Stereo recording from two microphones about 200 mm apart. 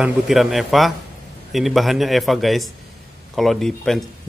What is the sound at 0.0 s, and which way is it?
Speech, centre (ahead or behind).